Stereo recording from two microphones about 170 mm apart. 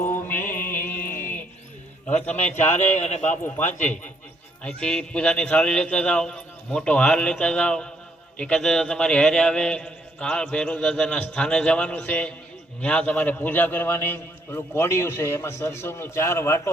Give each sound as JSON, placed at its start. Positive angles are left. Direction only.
{"t": 0.0, "sound": "mantra", "side_deg": 10}
{"t": 1.2, "sound": "music", "side_deg": 10}
{"t": 2.7, "sound": "speech", "side_deg": 45}
{"t": 3.2, "sound": "a man's voice", "side_deg": 10}
{"t": 3.7, "sound": "speech", "side_deg": 45}
{"t": 4.6, "sound": "a man's voice", "side_deg": 5}